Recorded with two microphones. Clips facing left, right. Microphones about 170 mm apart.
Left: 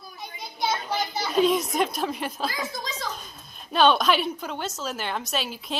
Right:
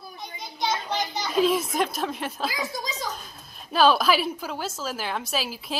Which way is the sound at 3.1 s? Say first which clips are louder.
Even; centre (ahead or behind).